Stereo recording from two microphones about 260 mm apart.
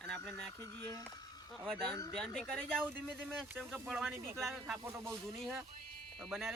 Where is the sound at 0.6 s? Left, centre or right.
Centre.